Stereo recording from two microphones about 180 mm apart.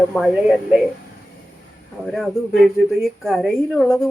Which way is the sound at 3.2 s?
Centre (ahead or behind).